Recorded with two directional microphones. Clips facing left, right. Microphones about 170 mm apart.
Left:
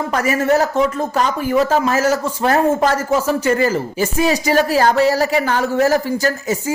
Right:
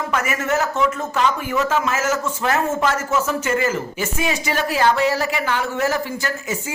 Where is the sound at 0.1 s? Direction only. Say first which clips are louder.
Left 7 dB; 35° left (ahead or behind).